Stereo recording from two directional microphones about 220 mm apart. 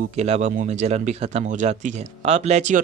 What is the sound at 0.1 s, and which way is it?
Speech, 30° right (ahead or behind).